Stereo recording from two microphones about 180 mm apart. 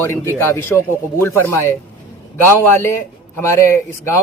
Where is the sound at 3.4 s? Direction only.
15° left (ahead or behind).